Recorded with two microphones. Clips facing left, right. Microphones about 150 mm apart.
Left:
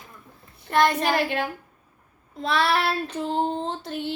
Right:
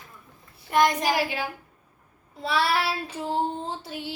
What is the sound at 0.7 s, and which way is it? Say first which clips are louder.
Speech: left 1 dB; 10° right (ahead or behind).